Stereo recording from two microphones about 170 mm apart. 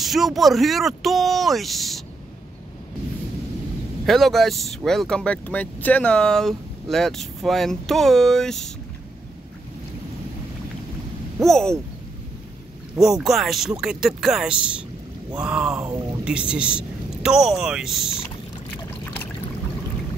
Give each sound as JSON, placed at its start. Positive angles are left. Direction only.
{"t": 0.0, "sound": "speech", "side_deg": 0}
{"t": 4.0, "sound": "speech", "side_deg": 0}
{"t": 11.3, "sound": "speech", "side_deg": 0}
{"t": 13.0, "sound": "speech", "side_deg": 0}
{"t": 15.8, "sound": "speech", "side_deg": -25}
{"t": 16.3, "sound": "speech", "side_deg": -5}